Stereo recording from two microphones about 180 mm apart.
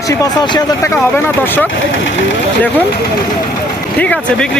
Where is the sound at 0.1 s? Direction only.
20° left (ahead or behind).